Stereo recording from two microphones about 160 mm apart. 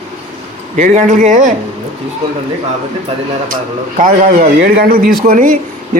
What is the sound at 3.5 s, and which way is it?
Speech, 55° right (ahead or behind).